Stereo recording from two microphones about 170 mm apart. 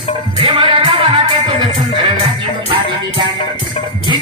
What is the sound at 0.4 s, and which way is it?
Music, 30° right (ahead or behind).